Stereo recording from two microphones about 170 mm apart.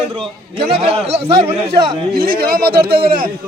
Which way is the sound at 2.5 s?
65° right (ahead or behind).